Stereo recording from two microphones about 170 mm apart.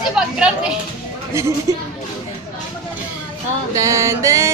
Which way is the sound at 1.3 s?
15° right (ahead or behind).